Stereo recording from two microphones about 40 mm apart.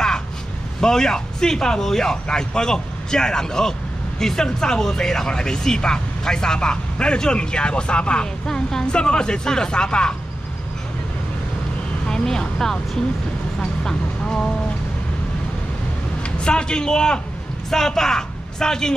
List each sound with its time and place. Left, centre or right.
0.7 s speech: centre
12.1 s speech: centre
14.2 s speech: left
16.2 s a man's voice: left